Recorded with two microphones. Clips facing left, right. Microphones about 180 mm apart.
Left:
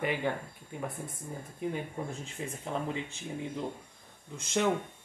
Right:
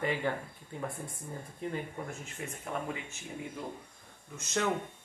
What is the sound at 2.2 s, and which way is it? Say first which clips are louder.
Speech: left 3 dB; 30° left (ahead or behind).